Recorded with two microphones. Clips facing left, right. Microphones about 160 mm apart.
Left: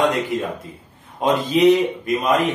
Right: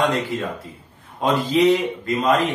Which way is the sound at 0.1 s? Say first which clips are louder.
Left 1 dB; 20° left (ahead or behind).